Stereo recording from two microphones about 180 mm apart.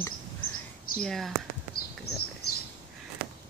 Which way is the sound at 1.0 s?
Centre (ahead or behind).